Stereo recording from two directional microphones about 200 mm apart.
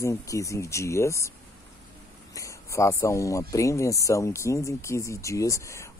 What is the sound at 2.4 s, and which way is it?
Speech, 15° left (ahead or behind).